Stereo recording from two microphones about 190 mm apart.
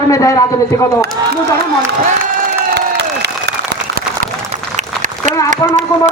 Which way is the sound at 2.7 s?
65° right (ahead or behind).